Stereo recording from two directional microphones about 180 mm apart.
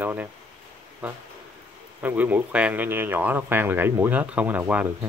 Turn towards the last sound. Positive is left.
turn(degrees=-10)  # may be behind; listen again after turning